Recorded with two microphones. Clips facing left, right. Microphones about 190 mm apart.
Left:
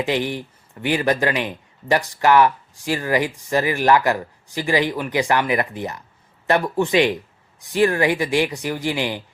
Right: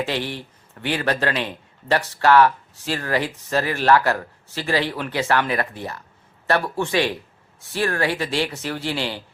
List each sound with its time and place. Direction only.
0.0 s speech: 15° left (ahead or behind)